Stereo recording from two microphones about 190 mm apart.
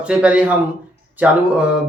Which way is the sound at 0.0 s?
5° right (ahead or behind).